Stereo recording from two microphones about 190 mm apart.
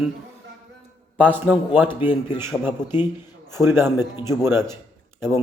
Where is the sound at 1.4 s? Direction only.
10° right (ahead or behind).